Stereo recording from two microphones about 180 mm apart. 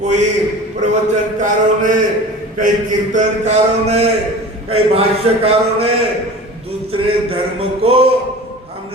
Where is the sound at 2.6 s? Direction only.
45° right (ahead or behind).